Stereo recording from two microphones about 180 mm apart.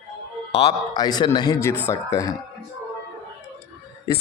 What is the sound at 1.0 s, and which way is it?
A man's voice, 20° left (ahead or behind).